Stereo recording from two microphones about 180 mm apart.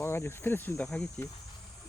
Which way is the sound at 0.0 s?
15° left (ahead or behind).